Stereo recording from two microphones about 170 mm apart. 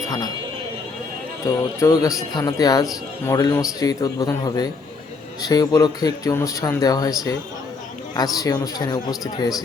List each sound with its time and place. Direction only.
1.5 s speech: 20° left (ahead or behind)
8.1 s speech: 20° left (ahead or behind)